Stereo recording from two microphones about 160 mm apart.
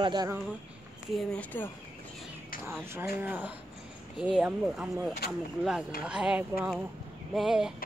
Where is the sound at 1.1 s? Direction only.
Centre (ahead or behind).